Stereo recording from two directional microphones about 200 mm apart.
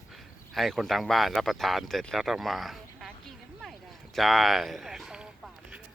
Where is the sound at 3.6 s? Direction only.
Centre (ahead or behind).